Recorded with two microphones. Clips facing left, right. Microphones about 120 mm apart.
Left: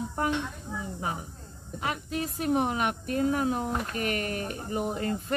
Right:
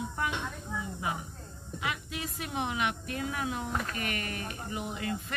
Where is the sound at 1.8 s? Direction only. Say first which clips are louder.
Left 5 dB; 40° left (ahead or behind).